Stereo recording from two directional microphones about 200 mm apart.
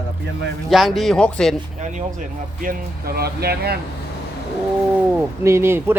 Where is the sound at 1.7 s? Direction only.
40° right (ahead or behind).